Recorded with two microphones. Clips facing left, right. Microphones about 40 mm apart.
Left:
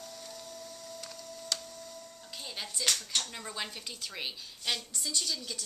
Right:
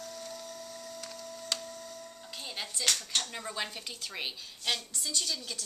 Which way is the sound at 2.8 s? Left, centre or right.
Centre.